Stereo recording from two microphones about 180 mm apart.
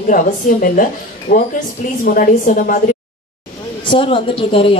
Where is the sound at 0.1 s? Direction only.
50° left (ahead or behind).